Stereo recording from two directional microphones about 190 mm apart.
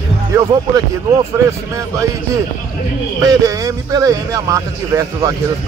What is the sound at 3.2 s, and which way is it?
Speech, 20° right (ahead or behind).